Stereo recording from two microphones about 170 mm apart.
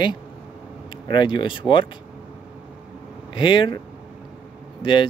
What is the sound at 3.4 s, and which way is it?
Speech, 30° left (ahead or behind).